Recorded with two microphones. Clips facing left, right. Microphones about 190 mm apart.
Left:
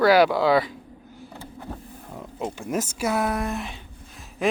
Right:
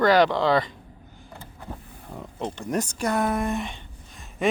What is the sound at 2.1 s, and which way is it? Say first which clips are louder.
Speech: left 1 dB; 5° left (ahead or behind).